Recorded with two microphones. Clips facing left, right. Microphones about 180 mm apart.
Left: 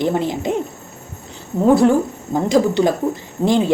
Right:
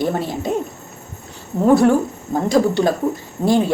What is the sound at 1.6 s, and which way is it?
A woman's voice, 10° left (ahead or behind).